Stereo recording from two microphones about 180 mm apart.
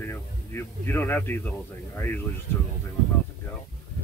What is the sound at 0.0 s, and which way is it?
Speech, 15° left (ahead or behind).